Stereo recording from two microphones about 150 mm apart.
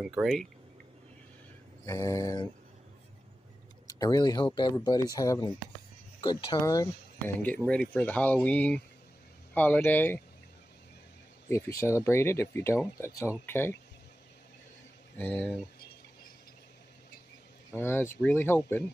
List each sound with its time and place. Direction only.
0.0 s speech: 5° right (ahead or behind)
1.9 s speech: 20° left (ahead or behind)
3.8 s speech: 25° left (ahead or behind)
6.6 s speech: 20° left (ahead or behind)
7.3 s speech: 10° left (ahead or behind)
11.4 s speech: 20° left (ahead or behind)
15.1 s speech: 10° left (ahead or behind)
17.7 s speech: 15° left (ahead or behind)